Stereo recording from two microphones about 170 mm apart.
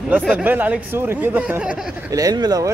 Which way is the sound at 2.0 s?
20° right (ahead or behind).